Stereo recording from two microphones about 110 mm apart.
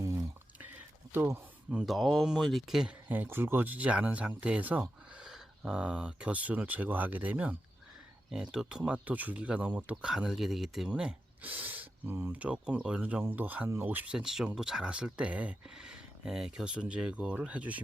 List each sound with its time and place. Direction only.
0.0 s a sound: 30° right (ahead or behind)
1.1 s speech: 20° right (ahead or behind)
1.7 s speech: 5° right (ahead or behind)
3.1 s speech: 20° right (ahead or behind)